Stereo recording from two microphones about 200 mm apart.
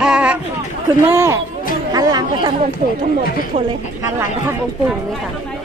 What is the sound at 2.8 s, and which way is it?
Speech, 45° right (ahead or behind).